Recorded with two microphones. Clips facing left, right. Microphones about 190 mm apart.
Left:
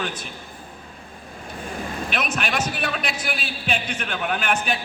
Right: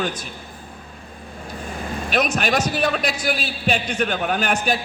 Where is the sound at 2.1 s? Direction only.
40° right (ahead or behind).